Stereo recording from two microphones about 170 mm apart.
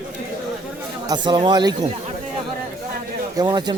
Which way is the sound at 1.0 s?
25° right (ahead or behind).